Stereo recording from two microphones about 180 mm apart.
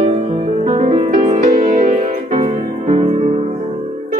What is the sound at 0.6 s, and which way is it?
Music, 35° right (ahead or behind).